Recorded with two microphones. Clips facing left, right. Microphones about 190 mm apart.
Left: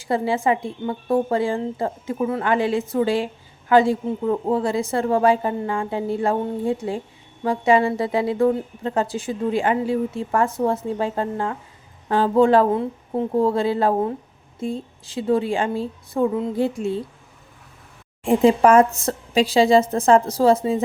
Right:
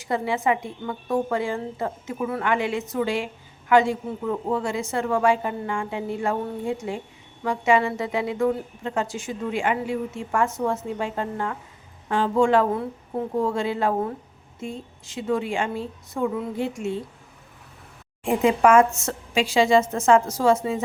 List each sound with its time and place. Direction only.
0.0 s a woman's voice: 30° left (ahead or behind)
18.3 s a woman's voice: 35° left (ahead or behind)